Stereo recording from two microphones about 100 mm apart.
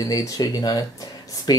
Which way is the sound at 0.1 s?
40° left (ahead or behind).